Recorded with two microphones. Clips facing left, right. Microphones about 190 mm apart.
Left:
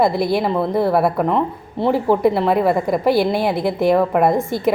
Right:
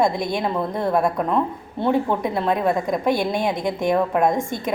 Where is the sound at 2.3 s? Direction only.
70° left (ahead or behind).